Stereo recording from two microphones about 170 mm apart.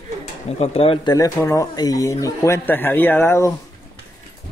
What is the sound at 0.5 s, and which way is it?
Speech, 35° left (ahead or behind).